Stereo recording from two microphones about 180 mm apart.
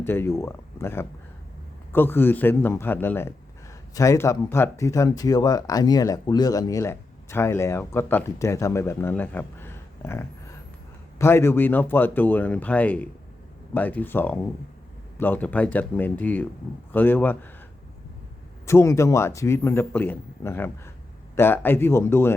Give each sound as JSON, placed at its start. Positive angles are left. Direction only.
{"t": 0.0, "sound": "speech", "side_deg": 10}
{"t": 18.6, "sound": "speech", "side_deg": 15}